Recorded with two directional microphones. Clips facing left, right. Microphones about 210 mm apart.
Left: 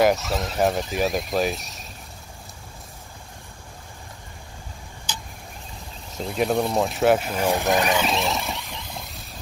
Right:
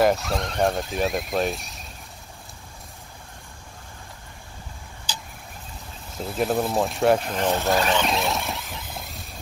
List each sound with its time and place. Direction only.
0.0 s speech: centre (ahead or behind)
6.1 s speech: centre (ahead or behind); by 8.0 s 15° left (ahead or behind)
8.0 s vehicle: centre (ahead or behind)